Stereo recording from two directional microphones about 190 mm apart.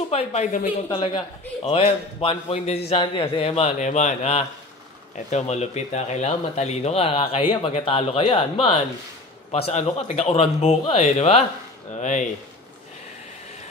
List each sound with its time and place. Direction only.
0.1 s speech: 35° left (ahead or behind)
0.8 s a man's voice: 25° left (ahead or behind); by 12.3 s 40° left (ahead or behind)